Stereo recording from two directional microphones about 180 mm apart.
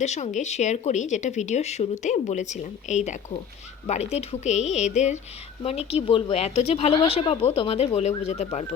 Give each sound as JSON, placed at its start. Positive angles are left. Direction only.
{"t": 0.0, "sound": "speech", "side_deg": 40}